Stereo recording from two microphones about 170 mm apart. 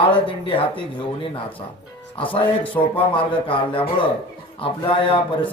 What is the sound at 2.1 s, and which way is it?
Speech, 30° left (ahead or behind).